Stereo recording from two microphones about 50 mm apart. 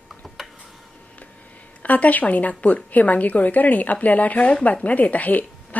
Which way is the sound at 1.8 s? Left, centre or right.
Left.